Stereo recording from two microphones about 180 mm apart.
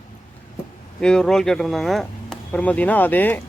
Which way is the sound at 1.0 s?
5° left (ahead or behind).